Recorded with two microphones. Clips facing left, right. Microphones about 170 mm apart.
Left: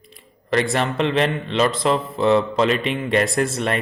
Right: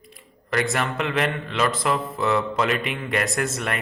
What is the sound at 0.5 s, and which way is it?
A man's voice, 30° left (ahead or behind).